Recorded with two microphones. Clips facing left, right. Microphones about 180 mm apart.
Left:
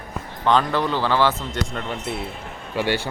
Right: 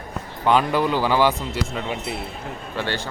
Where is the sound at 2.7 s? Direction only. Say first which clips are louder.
Left 5 dB; 10° left (ahead or behind).